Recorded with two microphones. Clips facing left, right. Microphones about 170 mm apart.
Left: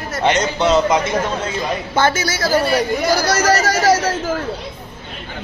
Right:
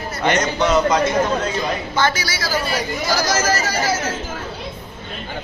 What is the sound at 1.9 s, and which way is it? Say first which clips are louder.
Speech: left 5 dB; 50° left (ahead or behind).